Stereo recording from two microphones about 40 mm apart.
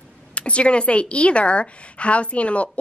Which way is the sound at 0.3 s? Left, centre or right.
Left.